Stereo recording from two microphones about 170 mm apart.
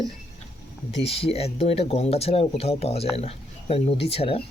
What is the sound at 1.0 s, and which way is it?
Speech, 35° left (ahead or behind).